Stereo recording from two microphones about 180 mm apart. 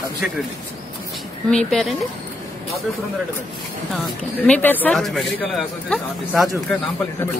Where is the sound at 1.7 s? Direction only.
Centre (ahead or behind).